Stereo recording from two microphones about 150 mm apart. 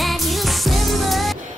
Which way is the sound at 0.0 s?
Centre (ahead or behind).